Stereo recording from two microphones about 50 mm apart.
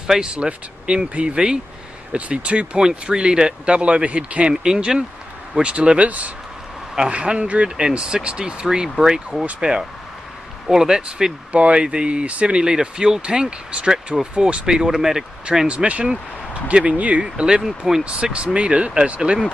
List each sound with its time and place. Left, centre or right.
0.0 s speech: centre
17.2 s speech: centre
18.0 s speech: right